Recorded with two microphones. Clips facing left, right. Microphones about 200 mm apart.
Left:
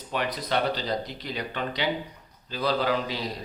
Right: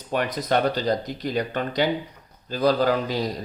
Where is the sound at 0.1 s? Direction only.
45° right (ahead or behind).